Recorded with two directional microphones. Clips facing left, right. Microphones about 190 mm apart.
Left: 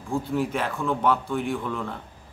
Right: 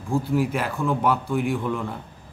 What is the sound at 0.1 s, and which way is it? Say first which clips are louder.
A man's voice: right 3 dB; 5° right (ahead or behind).